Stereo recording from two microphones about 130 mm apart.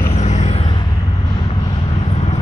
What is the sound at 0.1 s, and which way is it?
Vehicle, 60° left (ahead or behind).